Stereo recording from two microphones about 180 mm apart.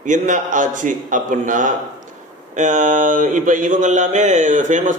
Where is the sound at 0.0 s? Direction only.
45° right (ahead or behind).